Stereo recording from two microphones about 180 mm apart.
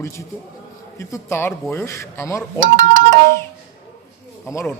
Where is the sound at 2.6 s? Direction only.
90° right.